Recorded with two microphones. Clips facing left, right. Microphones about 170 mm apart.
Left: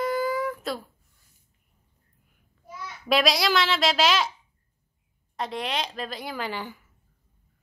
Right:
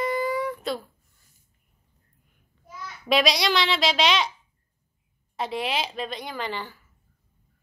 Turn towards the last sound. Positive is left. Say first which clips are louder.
# even
turn(degrees=10)  # may be behind; listen again after turning